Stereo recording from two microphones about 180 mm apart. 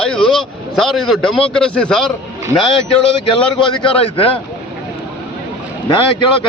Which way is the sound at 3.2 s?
25° left (ahead or behind).